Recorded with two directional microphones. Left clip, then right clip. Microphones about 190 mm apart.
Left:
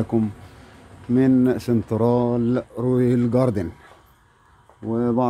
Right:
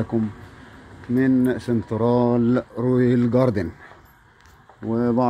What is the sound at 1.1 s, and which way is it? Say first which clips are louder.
Speech: left 2 dB; 30° left (ahead or behind).